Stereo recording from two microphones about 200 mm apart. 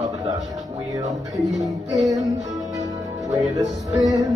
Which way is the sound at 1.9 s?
20° right (ahead or behind).